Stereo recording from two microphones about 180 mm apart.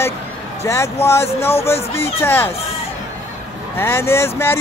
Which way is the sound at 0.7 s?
15° left (ahead or behind).